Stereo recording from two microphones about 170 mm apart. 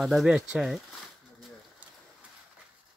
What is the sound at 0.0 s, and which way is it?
Speech, centre (ahead or behind).